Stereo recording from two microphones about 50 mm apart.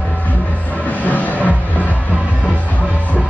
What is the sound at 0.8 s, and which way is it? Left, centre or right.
Music, left.